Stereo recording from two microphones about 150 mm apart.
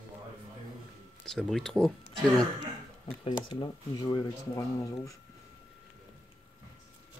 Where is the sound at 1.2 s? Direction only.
5° left (ahead or behind).